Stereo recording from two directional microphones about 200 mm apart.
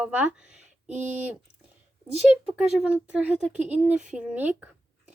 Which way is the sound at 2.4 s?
5° right (ahead or behind).